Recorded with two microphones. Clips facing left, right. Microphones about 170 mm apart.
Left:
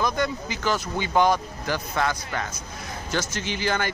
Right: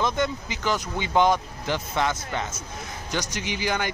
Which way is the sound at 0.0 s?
20° right (ahead or behind).